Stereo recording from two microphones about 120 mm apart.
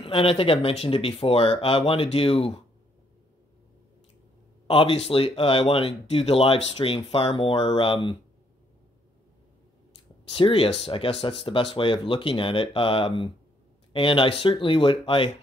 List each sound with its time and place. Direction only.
0.0 s speech: 50° left (ahead or behind)
4.6 s speech: 50° left (ahead or behind)
10.3 s speech: 50° left (ahead or behind)